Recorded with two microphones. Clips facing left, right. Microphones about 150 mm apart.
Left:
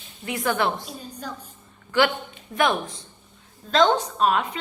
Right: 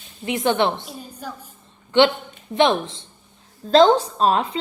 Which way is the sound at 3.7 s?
30° right (ahead or behind).